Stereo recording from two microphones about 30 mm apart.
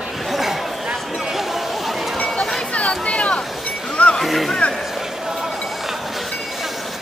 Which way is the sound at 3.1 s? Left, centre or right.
Left.